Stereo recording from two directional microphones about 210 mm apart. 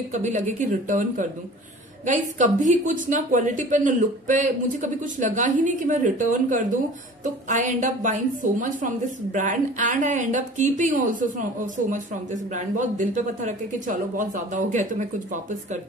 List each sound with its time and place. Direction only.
0.1 s a woman's voice: 35° right (ahead or behind)